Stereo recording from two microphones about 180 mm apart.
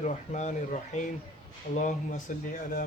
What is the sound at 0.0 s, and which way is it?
Speech, 40° left (ahead or behind).